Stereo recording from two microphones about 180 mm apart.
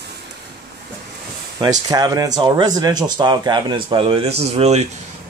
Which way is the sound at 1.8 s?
20° right (ahead or behind).